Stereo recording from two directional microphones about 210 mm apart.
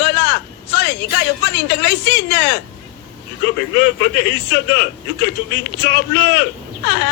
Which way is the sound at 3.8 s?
50° left (ahead or behind).